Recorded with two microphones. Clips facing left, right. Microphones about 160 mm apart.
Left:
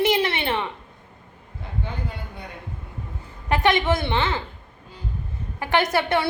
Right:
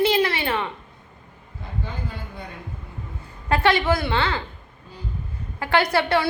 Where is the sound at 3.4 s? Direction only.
20° left (ahead or behind).